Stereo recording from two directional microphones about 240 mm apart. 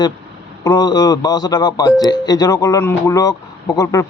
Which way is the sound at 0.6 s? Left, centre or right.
Centre.